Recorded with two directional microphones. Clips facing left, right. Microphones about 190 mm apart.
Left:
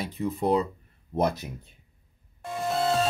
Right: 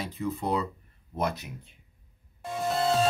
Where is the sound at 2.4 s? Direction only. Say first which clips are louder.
Left 1 dB; centre (ahead or behind).